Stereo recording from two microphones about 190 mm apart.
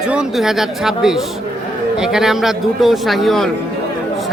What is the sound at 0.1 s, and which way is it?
Speech, 5° right (ahead or behind).